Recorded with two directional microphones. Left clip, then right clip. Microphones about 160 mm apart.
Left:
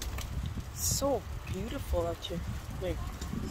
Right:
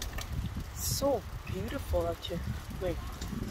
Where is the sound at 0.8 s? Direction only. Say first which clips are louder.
Even; 15° left (ahead or behind).